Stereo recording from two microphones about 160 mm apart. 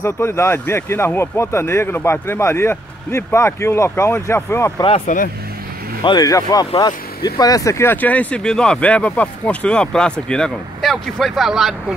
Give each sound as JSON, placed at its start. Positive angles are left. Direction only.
{"t": 0.0, "sound": "speech", "side_deg": 15}
{"t": 4.8, "sound": "speech", "side_deg": 40}
{"t": 6.0, "sound": "speech", "side_deg": 25}